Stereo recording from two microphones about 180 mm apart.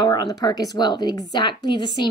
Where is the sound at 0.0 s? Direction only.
20° left (ahead or behind).